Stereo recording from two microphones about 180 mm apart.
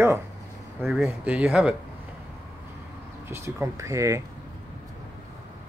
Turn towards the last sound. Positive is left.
turn(degrees=-15)  # may be behind; listen again after turning